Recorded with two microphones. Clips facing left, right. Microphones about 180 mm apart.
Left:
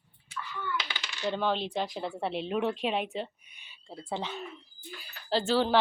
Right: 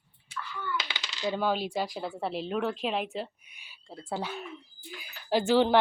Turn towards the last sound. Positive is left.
turn(degrees=-15)  # may be behind; listen again after turning